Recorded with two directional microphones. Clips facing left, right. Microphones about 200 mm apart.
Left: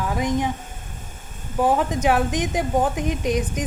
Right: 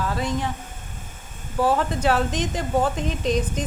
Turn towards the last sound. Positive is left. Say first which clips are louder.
# even
turn(degrees=15)  # may be behind; listen again after turning